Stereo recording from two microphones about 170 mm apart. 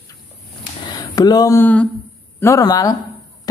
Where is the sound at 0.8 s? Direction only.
25° left (ahead or behind).